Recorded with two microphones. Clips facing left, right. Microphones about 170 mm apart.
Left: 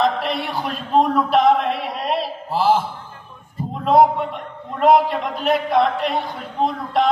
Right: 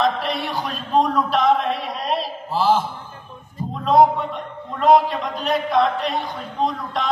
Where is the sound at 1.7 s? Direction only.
60° left (ahead or behind).